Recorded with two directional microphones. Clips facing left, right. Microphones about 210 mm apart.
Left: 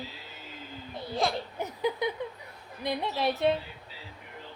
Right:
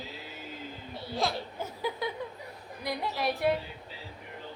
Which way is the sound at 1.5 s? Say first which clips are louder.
Left 4 dB; 20° left (ahead or behind).